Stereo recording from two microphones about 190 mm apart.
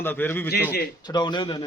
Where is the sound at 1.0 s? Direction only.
20° left (ahead or behind).